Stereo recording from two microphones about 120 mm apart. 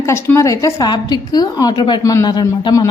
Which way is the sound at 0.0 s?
20° left (ahead or behind).